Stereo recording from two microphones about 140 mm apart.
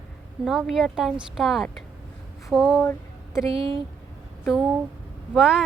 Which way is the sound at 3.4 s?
40° right (ahead or behind).